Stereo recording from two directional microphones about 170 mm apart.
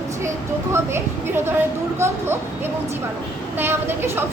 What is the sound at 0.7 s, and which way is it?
A woman's voice, 15° right (ahead or behind).